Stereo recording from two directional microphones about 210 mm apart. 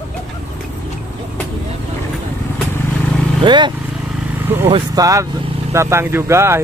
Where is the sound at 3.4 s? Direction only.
20° right (ahead or behind).